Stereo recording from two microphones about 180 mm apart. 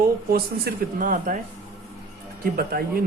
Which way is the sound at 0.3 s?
55° right (ahead or behind).